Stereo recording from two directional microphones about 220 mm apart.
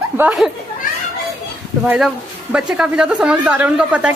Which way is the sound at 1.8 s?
5° right (ahead or behind).